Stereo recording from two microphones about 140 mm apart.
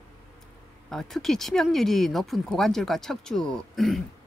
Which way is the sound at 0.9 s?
Centre (ahead or behind).